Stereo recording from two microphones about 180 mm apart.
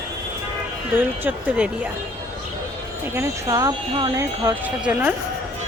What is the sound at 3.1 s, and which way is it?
Speech, 15° right (ahead or behind).